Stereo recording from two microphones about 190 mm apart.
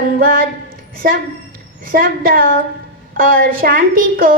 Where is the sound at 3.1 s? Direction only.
50° right (ahead or behind).